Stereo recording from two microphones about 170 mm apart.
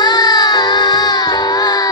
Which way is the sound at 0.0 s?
25° left (ahead or behind).